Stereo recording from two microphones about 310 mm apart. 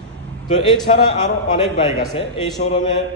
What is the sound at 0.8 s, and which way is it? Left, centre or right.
A man's voice, left.